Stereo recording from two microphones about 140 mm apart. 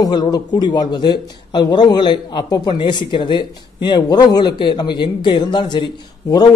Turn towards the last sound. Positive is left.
turn(degrees=30)  # may be behind; listen again after turning